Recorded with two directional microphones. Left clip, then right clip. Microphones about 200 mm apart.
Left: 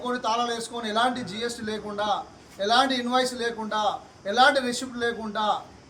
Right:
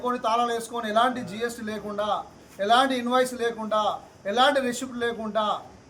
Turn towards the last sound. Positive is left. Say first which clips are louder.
# even
turn(degrees=-5)  # may be behind; listen again after turning